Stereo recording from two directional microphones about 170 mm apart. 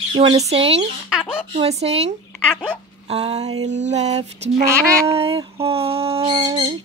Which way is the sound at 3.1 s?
40° right (ahead or behind).